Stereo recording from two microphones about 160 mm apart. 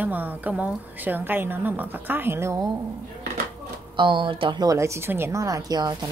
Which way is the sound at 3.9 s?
30° right (ahead or behind).